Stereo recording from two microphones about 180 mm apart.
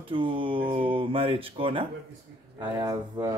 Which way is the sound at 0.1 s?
30° right (ahead or behind).